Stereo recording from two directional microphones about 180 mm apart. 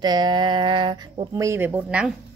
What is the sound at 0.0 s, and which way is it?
Speech, 25° right (ahead or behind).